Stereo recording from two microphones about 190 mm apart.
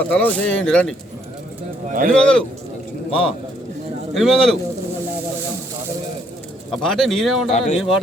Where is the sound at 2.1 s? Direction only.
5° left (ahead or behind).